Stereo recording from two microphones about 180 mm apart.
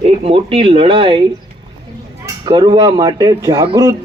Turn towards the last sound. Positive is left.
turn(degrees=-20)  # may be behind; listen again after turning